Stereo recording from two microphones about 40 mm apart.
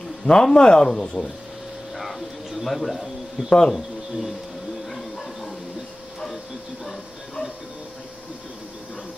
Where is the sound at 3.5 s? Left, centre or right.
Centre.